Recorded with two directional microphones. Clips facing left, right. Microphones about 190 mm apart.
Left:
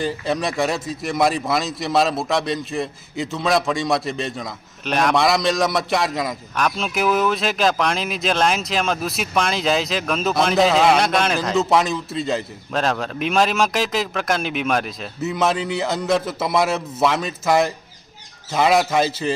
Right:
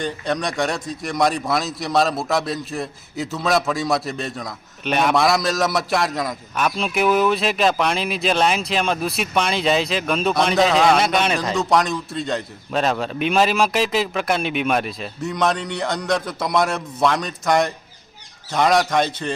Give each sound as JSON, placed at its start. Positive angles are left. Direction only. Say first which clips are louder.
{"t": 0.0, "sound": "speech", "louder": "left 1 dB", "side_deg": 5}